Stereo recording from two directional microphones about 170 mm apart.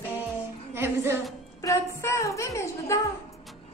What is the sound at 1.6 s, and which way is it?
A woman's voice, 15° left (ahead or behind).